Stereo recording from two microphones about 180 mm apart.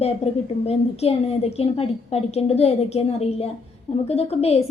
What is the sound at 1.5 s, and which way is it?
A woman's voice, 35° left (ahead or behind).